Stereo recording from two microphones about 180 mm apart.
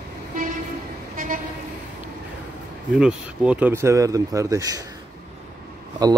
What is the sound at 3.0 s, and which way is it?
Speech, 5° right (ahead or behind).